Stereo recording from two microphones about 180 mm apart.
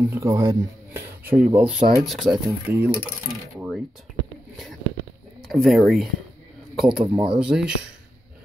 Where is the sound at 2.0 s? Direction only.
Centre (ahead or behind).